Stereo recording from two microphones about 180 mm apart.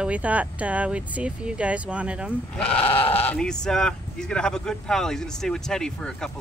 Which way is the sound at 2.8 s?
35° left (ahead or behind).